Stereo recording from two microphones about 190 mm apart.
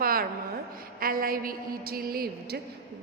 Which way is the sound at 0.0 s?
50° right (ahead or behind).